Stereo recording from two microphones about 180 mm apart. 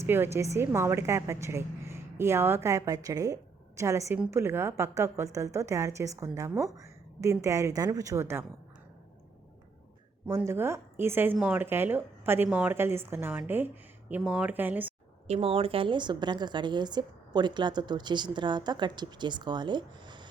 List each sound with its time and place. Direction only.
0.0 s a woman's voice: 15° right (ahead or behind)
10.2 s a woman's voice: 15° right (ahead or behind)
15.3 s a woman's voice: 30° right (ahead or behind)